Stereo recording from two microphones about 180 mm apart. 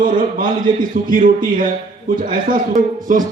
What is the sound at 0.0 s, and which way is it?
A man's voice, 50° right (ahead or behind).